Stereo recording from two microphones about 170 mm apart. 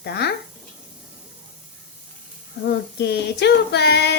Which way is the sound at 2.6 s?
75° left (ahead or behind).